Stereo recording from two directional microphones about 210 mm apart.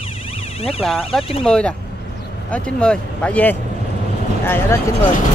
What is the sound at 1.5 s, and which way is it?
Speech, 5° left (ahead or behind).